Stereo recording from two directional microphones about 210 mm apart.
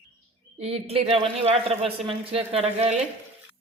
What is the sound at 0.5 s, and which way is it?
A woman's voice, 30° right (ahead or behind).